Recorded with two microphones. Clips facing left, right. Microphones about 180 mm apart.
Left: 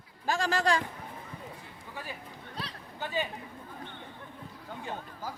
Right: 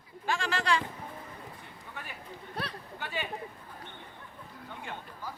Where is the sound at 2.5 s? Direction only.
60° right (ahead or behind).